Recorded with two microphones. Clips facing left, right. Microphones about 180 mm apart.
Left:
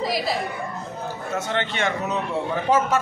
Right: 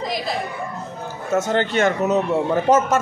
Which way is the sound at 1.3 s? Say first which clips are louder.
Right 8 dB; 40° right (ahead or behind).